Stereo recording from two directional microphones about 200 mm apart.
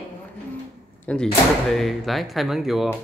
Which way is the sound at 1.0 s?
5° left (ahead or behind).